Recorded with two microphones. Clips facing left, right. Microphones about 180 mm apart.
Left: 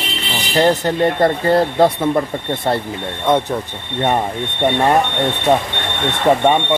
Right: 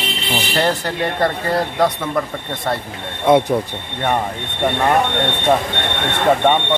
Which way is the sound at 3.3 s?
10° right (ahead or behind).